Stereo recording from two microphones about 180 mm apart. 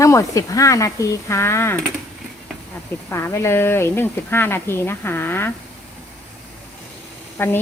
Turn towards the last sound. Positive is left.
turn(degrees=10)  # may be behind; listen again after turning